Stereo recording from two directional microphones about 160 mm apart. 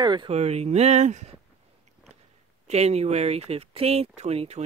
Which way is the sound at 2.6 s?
40° right (ahead or behind).